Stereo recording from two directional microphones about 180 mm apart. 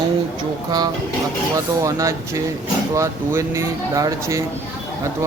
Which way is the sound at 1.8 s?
15° right (ahead or behind).